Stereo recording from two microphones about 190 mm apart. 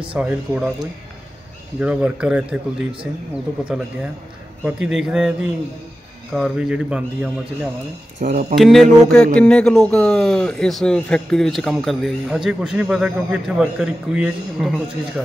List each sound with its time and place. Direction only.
0.1 s a man's voice: 5° right (ahead or behind)
1.8 s a man's voice: 5° right (ahead or behind)
6.3 s a man's voice: centre (ahead or behind)
8.2 s speech: 40° right (ahead or behind)
8.5 s a man's voice: centre (ahead or behind)